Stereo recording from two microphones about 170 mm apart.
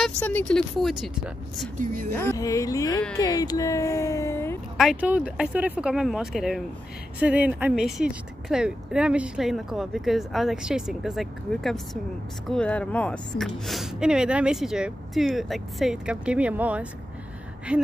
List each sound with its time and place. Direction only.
0.0 s speech: 10° left (ahead or behind)
2.0 s speech: 15° left (ahead or behind)
4.7 s speech: 5° right (ahead or behind)